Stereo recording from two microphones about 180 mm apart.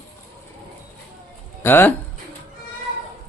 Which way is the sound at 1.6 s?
10° left (ahead or behind).